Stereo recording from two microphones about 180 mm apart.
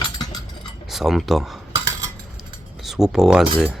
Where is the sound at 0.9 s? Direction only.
Centre (ahead or behind).